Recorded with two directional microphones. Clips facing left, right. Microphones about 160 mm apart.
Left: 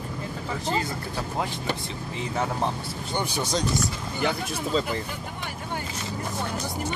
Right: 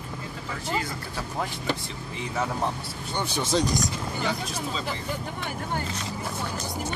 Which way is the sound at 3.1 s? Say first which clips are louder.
Left 1 dB; 10° left (ahead or behind).